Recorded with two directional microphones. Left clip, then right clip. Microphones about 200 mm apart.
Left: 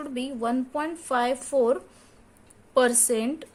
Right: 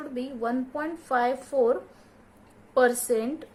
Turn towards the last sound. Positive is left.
turn(degrees=50)  # may be behind; listen again after turning